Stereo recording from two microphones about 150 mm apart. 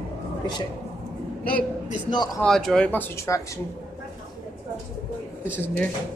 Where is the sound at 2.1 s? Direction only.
25° left (ahead or behind).